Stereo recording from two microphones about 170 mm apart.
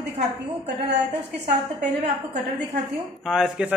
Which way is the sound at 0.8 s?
80° right.